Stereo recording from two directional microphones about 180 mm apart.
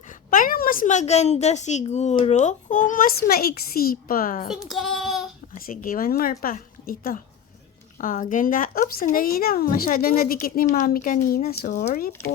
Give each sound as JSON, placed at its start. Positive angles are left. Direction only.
{"t": 0.3, "sound": "a woman's voice", "side_deg": 50}
{"t": 4.7, "sound": "child singing", "side_deg": 0}
{"t": 5.5, "sound": "a woman's voice", "side_deg": 50}